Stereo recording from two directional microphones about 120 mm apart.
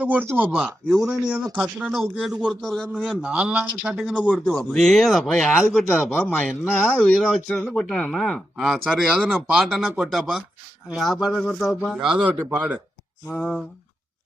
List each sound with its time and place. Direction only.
0.0 s speech: 15° right (ahead or behind)
5.9 s speech: 20° left (ahead or behind)
7.2 s speech: centre (ahead or behind)
11.9 s speech: 5° right (ahead or behind)
13.2 s speech: 5° left (ahead or behind)